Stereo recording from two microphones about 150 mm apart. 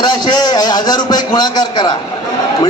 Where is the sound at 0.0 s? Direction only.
30° left (ahead or behind).